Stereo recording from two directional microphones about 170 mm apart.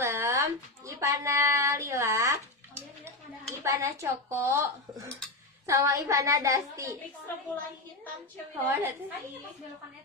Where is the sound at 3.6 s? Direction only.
20° right (ahead or behind).